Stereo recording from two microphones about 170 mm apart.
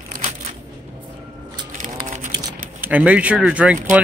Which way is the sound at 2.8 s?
10° right (ahead or behind).